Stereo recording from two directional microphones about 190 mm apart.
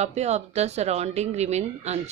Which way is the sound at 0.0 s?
35° right (ahead or behind).